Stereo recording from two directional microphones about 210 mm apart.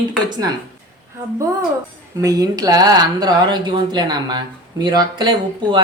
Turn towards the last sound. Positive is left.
turn(degrees=-20)  # may be behind; listen again after turning